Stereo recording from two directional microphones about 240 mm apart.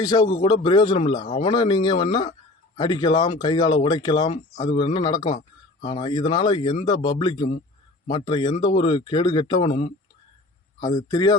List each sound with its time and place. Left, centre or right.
0.0 s speech: centre
10.9 s speech: centre